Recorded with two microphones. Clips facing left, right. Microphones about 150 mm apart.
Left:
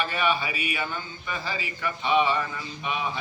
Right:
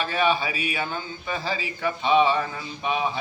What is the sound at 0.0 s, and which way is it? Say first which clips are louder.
A man's voice: right 3 dB; 30° right (ahead or behind).